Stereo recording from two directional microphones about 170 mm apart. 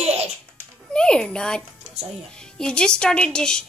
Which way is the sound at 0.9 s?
5° left (ahead or behind).